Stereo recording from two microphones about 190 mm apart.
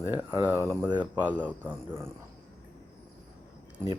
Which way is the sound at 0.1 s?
15° right (ahead or behind).